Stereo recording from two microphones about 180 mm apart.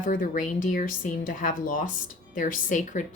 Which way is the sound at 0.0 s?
45° left (ahead or behind).